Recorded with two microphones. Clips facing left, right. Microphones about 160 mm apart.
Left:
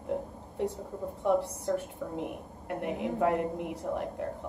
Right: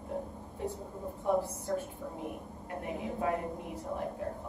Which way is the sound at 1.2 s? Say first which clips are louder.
Left 3 dB; 70° left (ahead or behind).